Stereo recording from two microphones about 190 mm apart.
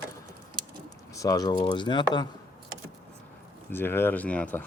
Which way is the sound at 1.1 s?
20° left (ahead or behind).